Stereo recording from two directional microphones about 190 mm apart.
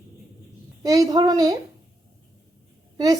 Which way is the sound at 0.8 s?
20° right (ahead or behind).